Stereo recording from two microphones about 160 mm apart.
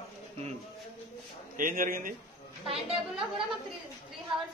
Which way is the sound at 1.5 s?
60° right (ahead or behind).